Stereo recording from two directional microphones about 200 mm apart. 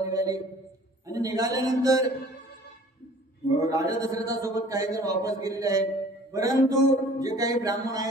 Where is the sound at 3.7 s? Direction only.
15° right (ahead or behind).